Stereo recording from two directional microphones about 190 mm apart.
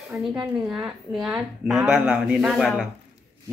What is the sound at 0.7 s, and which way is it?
Speech, 5° right (ahead or behind).